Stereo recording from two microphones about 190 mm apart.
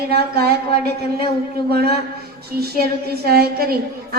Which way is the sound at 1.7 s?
55° right (ahead or behind).